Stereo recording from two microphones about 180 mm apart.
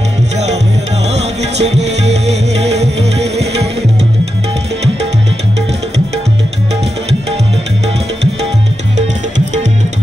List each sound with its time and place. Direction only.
1.1 s music: 35° right (ahead or behind)